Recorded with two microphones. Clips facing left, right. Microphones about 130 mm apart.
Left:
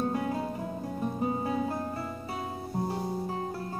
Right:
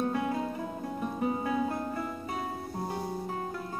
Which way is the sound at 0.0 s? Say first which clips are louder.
Even; 40° left (ahead or behind).